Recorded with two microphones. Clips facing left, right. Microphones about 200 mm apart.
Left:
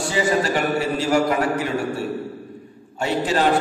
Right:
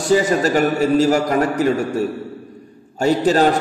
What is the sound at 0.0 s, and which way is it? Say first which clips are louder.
A man's voice: right 5 dB; 45° right (ahead or behind).